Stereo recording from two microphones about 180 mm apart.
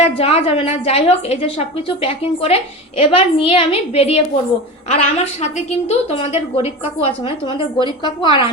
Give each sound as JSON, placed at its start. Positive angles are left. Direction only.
{"t": 0.0, "sound": "a woman's voice", "side_deg": 35}